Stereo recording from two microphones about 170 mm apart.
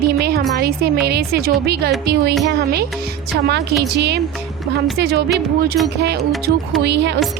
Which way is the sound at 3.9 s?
80° right.